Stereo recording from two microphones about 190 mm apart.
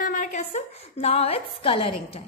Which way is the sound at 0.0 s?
45° left (ahead or behind).